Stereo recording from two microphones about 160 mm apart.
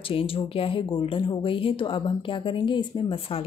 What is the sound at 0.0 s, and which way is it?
Speech, 35° left (ahead or behind).